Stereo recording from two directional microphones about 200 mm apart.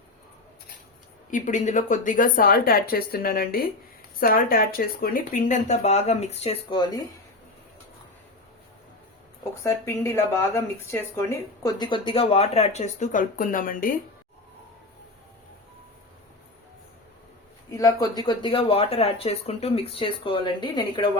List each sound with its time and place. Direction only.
1.3 s speech: 40° left (ahead or behind); by 7.0 s 20° left (ahead or behind)
9.4 s speech: 15° left (ahead or behind); by 13.9 s 45° left (ahead or behind)
17.7 s speech: 15° left (ahead or behind)